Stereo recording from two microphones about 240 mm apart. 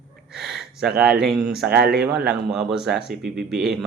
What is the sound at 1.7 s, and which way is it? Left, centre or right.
Speech, right.